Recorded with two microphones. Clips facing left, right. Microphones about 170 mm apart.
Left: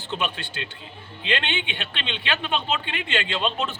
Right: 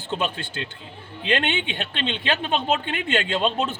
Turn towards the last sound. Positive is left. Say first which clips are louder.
# right 3 dB
turn(degrees=-40)  # may be behind; listen again after turning